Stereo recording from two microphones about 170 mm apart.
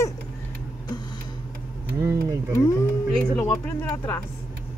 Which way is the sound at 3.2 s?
5° left (ahead or behind).